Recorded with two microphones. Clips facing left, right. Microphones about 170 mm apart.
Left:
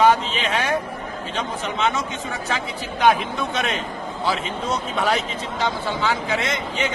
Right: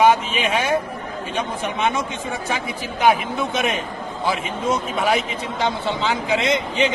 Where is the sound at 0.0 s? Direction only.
10° right (ahead or behind).